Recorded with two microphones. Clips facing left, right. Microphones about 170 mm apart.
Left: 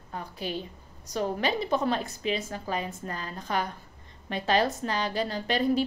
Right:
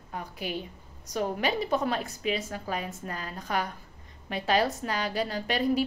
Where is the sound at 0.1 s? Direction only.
10° right (ahead or behind).